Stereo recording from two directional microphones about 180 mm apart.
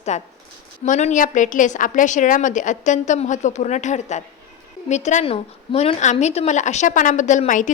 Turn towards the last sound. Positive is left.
turn(degrees=45)  # may be behind; listen again after turning